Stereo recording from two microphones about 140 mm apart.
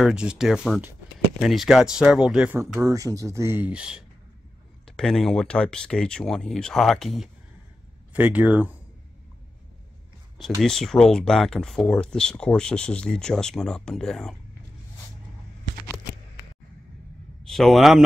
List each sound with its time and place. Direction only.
0.0 s speech: 5° right (ahead or behind)
2.8 s speech: 25° right (ahead or behind); by 4.0 s 5° right (ahead or behind)
4.8 s speech: 5° left (ahead or behind)
8.1 s speech: 10° right (ahead or behind)
10.6 s speech: centre (ahead or behind)
17.4 s speech: centre (ahead or behind)